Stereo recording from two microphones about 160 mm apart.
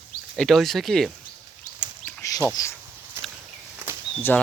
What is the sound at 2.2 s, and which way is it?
Bird, 20° left (ahead or behind).